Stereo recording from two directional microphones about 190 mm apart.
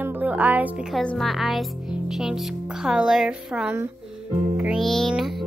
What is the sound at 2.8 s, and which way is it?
Speech, 5° right (ahead or behind).